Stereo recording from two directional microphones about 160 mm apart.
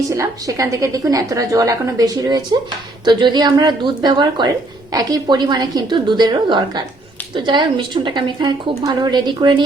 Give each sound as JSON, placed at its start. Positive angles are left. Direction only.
{"t": 0.1, "sound": "a woman's voice", "side_deg": -20}